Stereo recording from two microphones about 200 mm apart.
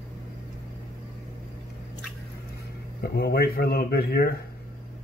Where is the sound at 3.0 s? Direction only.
50° left (ahead or behind).